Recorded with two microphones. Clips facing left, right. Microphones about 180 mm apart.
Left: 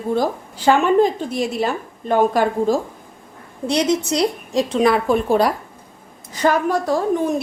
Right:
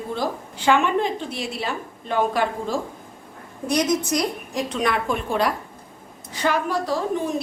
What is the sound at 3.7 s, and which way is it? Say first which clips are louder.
A woman's voice: left 3 dB; 30° left (ahead or behind).